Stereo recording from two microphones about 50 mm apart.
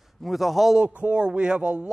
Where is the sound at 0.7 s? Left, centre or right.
Right.